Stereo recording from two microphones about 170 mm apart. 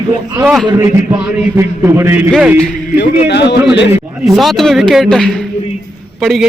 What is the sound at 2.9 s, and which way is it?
Speech, 80° left.